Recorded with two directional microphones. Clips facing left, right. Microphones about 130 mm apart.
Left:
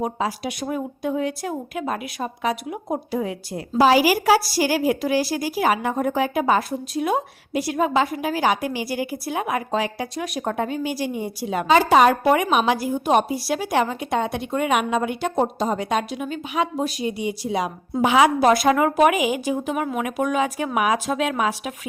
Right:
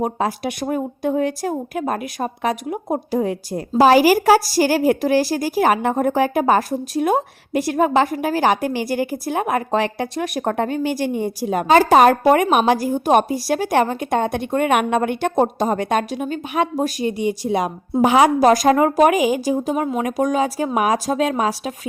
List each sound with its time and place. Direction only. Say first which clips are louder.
0.0 s a woman's voice: right 3 dB; 50° right (ahead or behind); by 21.7 s 35° right (ahead or behind)